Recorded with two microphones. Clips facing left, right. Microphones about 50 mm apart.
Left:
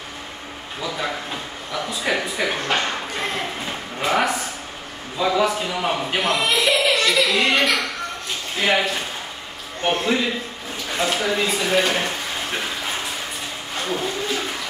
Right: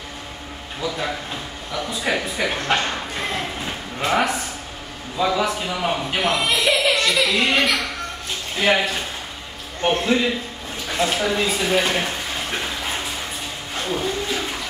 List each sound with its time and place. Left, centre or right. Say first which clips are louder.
1.7 s a sound: even; centre
5.2 s speech: left 1 dB; centre
9.8 s speech: right 1 dB; centre